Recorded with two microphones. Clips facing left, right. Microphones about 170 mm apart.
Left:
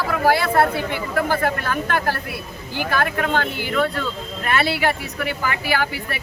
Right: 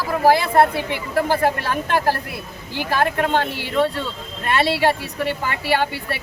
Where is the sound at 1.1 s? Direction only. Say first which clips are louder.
Right 3 dB; 30° right (ahead or behind).